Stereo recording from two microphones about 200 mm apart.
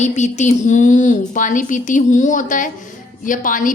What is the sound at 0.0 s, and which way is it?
A woman's voice, 35° left (ahead or behind).